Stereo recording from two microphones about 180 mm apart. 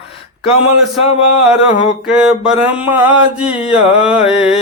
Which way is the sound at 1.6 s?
5° right (ahead or behind).